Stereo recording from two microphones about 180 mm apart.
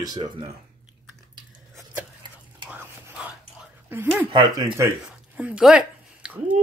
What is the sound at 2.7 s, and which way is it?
Whispering, 10° right (ahead or behind).